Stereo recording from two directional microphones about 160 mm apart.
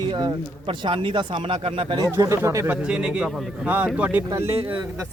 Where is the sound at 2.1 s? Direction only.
15° right (ahead or behind).